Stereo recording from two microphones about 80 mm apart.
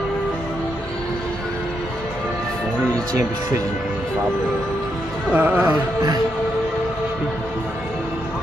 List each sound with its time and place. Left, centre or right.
5.3 s music: right